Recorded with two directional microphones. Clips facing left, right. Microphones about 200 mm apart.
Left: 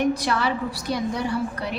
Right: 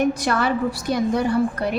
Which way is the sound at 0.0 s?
50° right (ahead or behind).